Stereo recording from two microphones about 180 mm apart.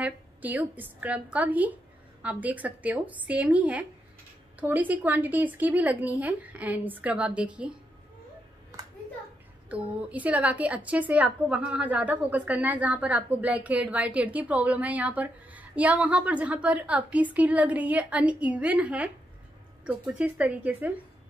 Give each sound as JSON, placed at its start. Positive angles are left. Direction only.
{"t": 0.0, "sound": "a woman's voice", "side_deg": -10}
{"t": 8.7, "sound": "clapping", "side_deg": -20}
{"t": 9.7, "sound": "a woman's voice", "side_deg": -10}